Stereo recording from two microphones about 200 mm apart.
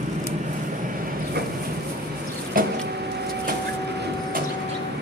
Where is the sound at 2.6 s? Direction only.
45° right (ahead or behind).